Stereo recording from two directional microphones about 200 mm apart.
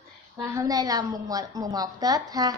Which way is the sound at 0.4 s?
15° right (ahead or behind).